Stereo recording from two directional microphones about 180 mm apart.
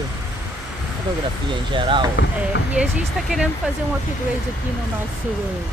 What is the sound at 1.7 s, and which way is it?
Speech, 25° right (ahead or behind).